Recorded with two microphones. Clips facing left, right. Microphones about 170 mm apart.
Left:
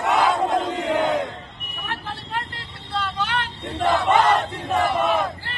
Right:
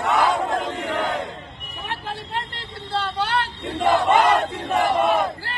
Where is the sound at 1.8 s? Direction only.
20° right (ahead or behind).